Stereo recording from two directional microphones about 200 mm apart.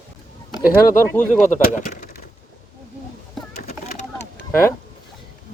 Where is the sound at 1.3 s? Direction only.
40° left (ahead or behind).